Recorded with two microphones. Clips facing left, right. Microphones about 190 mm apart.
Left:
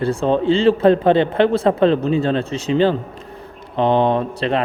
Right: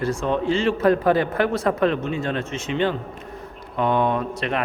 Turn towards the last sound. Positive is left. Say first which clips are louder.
# left 5 dB
turn(degrees=30)  # may be behind; listen again after turning